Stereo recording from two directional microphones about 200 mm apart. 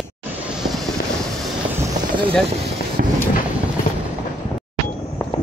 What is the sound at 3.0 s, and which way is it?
Train, 45° right (ahead or behind).